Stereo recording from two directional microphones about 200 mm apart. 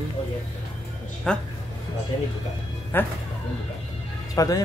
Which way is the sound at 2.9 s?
10° left (ahead or behind).